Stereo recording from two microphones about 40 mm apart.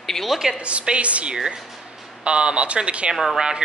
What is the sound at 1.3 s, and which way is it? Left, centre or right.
Speech, centre.